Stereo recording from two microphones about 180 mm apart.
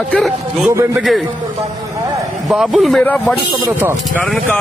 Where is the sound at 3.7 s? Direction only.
10° right (ahead or behind).